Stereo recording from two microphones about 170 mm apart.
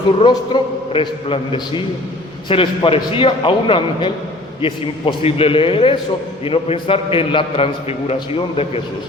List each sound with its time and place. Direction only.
0.2 s a man's voice: 30° left (ahead or behind)